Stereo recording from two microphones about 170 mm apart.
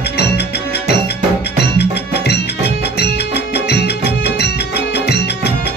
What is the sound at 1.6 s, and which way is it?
Music, 75° left (ahead or behind).